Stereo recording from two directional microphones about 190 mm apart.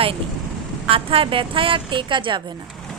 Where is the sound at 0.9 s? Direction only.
30° right (ahead or behind).